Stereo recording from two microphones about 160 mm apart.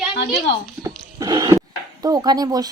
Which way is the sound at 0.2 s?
90° left.